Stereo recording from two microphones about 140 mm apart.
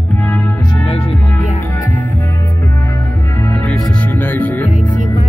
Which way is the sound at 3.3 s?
15° left (ahead or behind).